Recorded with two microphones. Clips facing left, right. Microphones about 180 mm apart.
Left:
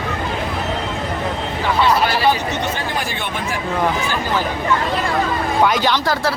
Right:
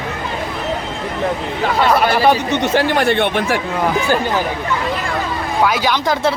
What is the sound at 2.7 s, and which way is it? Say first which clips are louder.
Speech: right 10 dB; 75° right (ahead or behind).